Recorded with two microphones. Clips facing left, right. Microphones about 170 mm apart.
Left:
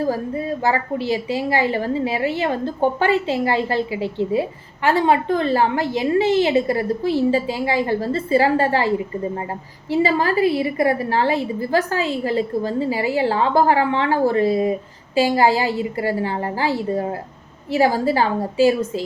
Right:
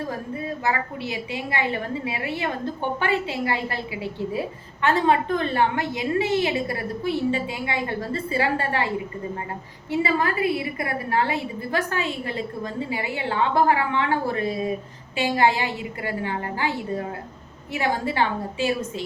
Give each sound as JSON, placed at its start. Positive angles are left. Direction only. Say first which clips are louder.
{"t": 0.6, "sound": "a woman's voice", "louder": "left 6 dB", "side_deg": 30}
{"t": 9.9, "sound": "a woman's voice", "louder": "left 5 dB", "side_deg": 30}